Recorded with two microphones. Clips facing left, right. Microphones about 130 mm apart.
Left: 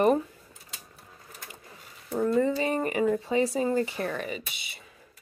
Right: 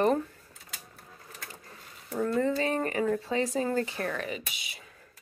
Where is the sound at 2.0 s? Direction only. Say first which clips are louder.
Left 3 dB; 10° left (ahead or behind).